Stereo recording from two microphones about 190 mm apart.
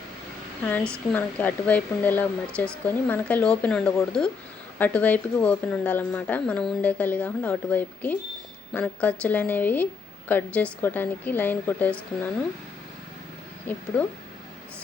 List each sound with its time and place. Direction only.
1.1 s a woman's voice: 10° left (ahead or behind)
13.7 s a woman's voice: 10° left (ahead or behind)